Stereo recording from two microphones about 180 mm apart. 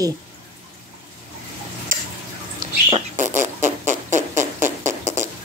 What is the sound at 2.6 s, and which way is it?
Rodents, 50° right (ahead or behind).